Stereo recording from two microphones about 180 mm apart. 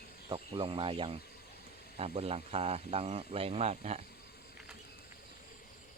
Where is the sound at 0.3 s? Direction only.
30° right (ahead or behind).